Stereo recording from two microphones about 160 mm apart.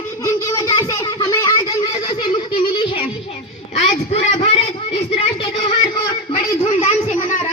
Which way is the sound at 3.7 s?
45° left (ahead or behind).